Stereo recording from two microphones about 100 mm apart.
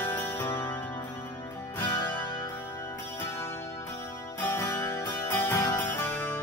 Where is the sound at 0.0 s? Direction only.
20° left (ahead or behind).